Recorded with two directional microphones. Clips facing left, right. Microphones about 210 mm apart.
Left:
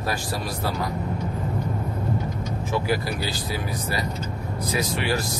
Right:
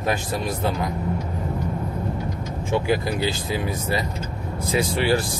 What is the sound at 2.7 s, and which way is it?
Speech, 20° right (ahead or behind).